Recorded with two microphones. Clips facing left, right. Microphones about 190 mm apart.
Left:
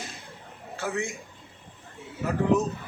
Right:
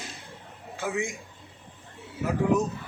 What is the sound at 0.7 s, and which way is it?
Speech, 15° right (ahead or behind).